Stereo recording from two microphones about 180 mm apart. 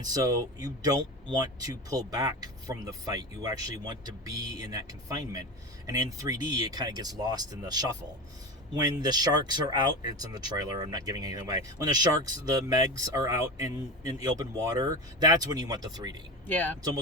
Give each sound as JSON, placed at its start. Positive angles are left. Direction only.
{"t": 0.0, "sound": "speech", "side_deg": -20}
{"t": 16.5, "sound": "speech", "side_deg": 10}